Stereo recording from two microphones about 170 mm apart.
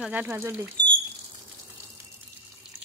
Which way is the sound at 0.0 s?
10° right (ahead or behind).